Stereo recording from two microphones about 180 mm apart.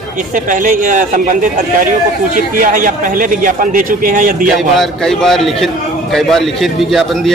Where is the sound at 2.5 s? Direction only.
50° right (ahead or behind).